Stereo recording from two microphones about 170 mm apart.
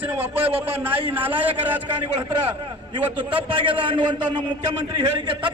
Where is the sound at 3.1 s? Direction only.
30° right (ahead or behind).